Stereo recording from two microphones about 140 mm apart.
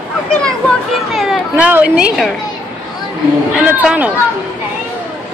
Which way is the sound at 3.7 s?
10° right (ahead or behind).